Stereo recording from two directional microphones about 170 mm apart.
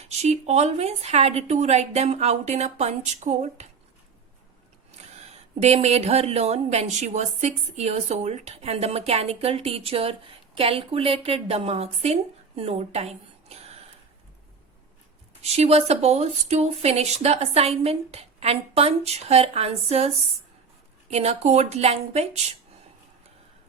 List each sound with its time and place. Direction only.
0.0 s speech: 40° right (ahead or behind)
4.9 s speech: 40° right (ahead or behind)
15.4 s speech: 40° right (ahead or behind)